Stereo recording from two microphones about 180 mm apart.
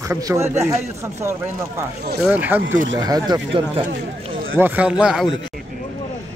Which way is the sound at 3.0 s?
20° right (ahead or behind).